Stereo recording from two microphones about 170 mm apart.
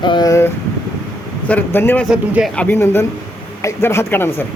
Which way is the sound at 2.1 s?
5° right (ahead or behind).